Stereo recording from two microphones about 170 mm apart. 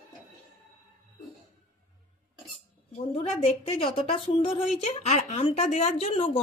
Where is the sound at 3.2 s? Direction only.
35° left (ahead or behind).